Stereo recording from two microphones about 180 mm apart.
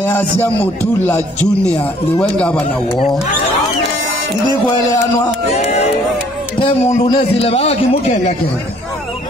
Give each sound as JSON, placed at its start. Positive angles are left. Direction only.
{"t": 0.4, "sound": "speech", "side_deg": 10}
{"t": 4.7, "sound": "speech", "side_deg": 20}
{"t": 5.6, "sound": "a man's voice", "side_deg": 35}
{"t": 7.2, "sound": "a man's voice", "side_deg": 35}